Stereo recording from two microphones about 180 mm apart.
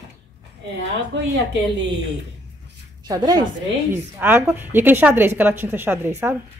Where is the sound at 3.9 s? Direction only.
10° right (ahead or behind).